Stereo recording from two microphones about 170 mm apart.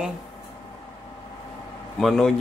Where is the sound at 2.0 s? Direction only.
Centre (ahead or behind).